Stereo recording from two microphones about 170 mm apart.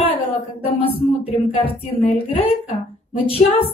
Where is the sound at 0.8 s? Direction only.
35° left (ahead or behind).